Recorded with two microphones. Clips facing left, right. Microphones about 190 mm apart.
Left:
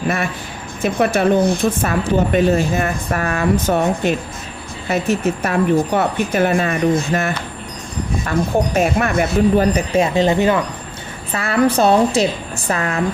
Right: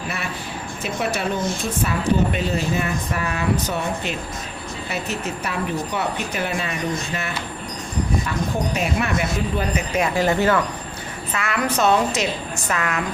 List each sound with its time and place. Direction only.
0.8 s speech: 50° left (ahead or behind)
9.9 s speech: 25° left (ahead or behind)
11.3 s a woman's voice: 35° left (ahead or behind)